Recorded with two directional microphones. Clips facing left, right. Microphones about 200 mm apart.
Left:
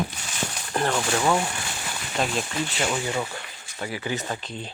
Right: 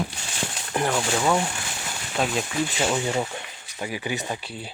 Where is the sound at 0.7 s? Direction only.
10° right (ahead or behind).